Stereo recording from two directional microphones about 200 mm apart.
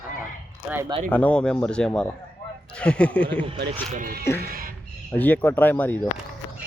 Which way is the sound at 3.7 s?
35° right (ahead or behind).